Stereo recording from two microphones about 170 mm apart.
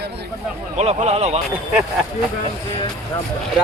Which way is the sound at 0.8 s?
40° right (ahead or behind).